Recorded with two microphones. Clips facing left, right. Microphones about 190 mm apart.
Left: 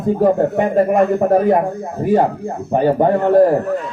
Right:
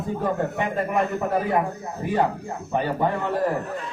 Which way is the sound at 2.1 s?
40° left (ahead or behind).